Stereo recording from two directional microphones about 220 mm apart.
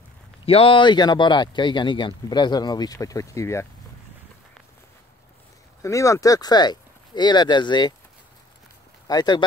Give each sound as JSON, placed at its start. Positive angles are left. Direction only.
{"t": 0.5, "sound": "speech", "side_deg": 25}
{"t": 5.8, "sound": "speech", "side_deg": 15}
{"t": 9.0, "sound": "speech", "side_deg": 20}